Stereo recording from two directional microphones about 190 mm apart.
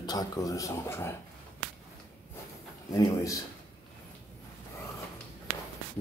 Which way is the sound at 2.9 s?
15° left (ahead or behind).